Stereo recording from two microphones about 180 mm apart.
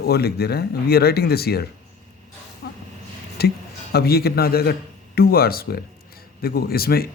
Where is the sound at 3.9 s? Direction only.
60° left (ahead or behind).